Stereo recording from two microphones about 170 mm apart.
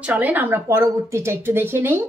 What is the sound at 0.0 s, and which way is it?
Speech, 10° right (ahead or behind).